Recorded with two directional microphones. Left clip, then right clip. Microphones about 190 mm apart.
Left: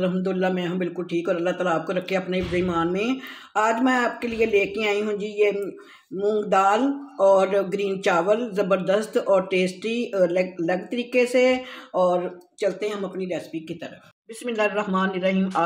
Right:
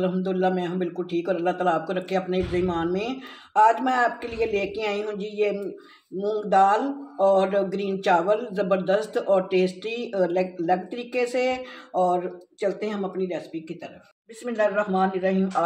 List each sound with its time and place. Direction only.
0.0 s speech: 55° left (ahead or behind)